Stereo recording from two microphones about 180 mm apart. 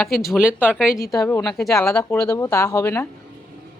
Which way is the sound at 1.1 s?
20° left (ahead or behind).